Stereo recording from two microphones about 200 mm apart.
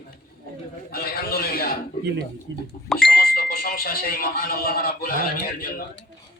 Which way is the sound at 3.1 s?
50° left (ahead or behind).